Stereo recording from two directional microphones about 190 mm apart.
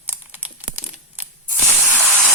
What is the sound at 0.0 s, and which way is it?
Crumpling, 10° right (ahead or behind).